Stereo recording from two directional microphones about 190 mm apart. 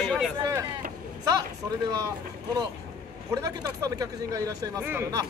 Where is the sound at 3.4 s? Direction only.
20° right (ahead or behind).